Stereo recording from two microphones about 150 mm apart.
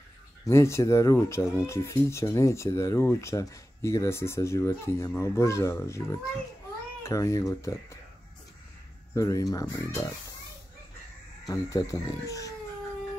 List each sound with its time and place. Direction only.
0.5 s speech: 20° left (ahead or behind)
9.1 s speech: 20° left (ahead or behind)
11.4 s speech: 20° left (ahead or behind)